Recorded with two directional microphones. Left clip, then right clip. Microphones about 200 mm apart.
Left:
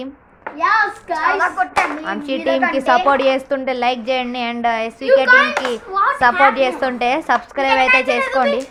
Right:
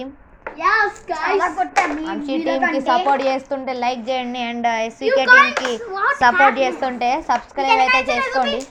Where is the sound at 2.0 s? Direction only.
15° left (ahead or behind).